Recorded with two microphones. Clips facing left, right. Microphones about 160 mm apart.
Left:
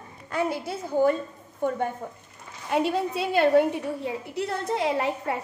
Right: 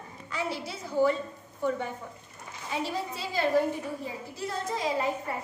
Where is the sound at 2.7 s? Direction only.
60° left (ahead or behind).